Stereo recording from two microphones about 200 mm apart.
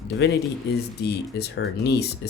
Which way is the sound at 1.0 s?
55° left (ahead or behind).